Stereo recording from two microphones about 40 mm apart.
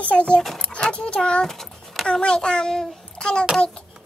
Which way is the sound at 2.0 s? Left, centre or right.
Left.